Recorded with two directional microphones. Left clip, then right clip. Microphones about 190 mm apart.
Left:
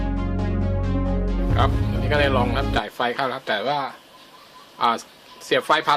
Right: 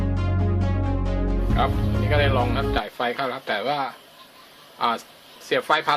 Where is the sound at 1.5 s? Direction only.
15° left (ahead or behind).